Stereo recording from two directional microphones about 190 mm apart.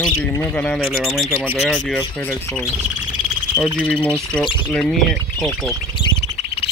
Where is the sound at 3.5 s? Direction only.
5° right (ahead or behind).